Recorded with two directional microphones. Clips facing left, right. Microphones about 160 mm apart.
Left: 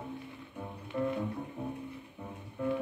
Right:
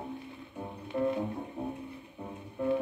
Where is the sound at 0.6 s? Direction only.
30° right (ahead or behind).